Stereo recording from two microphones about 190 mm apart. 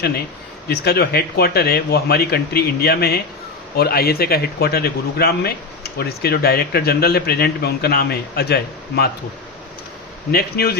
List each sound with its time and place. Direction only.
0.7 s a man's voice: 55° left (ahead or behind)
10.3 s a man's voice: 55° left (ahead or behind)